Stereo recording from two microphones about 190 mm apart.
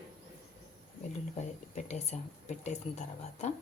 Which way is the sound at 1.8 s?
35° left (ahead or behind).